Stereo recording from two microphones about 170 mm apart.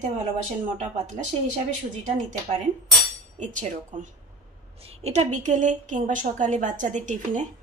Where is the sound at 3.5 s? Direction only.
45° right (ahead or behind).